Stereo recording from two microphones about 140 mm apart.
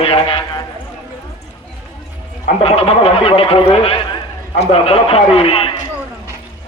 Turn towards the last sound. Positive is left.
turn(degrees=45)  # may be behind; listen again after turning